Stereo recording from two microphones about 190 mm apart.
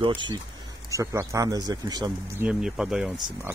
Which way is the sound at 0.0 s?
25° right (ahead or behind).